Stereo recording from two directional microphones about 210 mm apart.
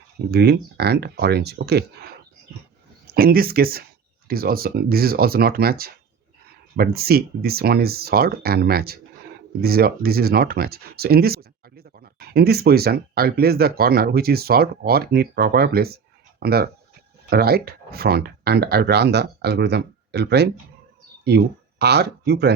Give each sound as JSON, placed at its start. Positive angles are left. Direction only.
{"t": 0.3, "sound": "speech", "side_deg": -50}
{"t": 3.1, "sound": "speech", "side_deg": -45}